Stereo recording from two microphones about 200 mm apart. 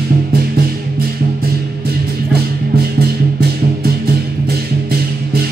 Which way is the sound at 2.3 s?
50° right (ahead or behind).